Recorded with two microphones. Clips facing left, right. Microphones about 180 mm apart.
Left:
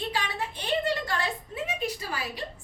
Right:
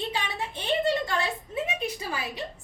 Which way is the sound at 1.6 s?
20° right (ahead or behind).